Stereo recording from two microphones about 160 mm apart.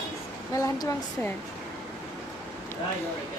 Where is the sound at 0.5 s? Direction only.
20° left (ahead or behind).